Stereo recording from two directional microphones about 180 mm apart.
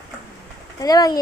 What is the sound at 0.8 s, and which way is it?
Speech, 20° left (ahead or behind).